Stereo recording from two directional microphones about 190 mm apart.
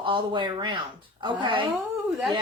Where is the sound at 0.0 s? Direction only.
25° right (ahead or behind).